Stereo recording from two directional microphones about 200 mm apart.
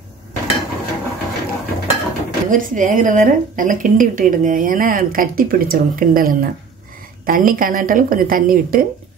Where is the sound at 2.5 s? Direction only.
40° right (ahead or behind).